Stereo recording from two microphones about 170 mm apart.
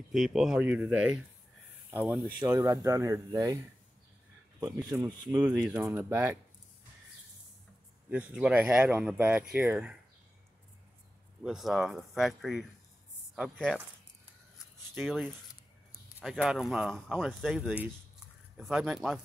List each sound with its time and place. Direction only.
0.1 s speech: 5° right (ahead or behind); by 3.5 s 20° right (ahead or behind)
5.0 s speech: 25° right (ahead or behind)
8.1 s speech: 5° right (ahead or behind)
11.4 s speech: centre (ahead or behind)
15.0 s speech: centre (ahead or behind)